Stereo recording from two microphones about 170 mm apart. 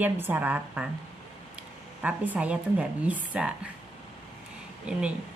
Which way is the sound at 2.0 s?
10° right (ahead or behind).